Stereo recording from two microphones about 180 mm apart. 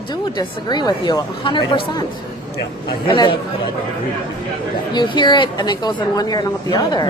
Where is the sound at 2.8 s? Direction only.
25° left (ahead or behind).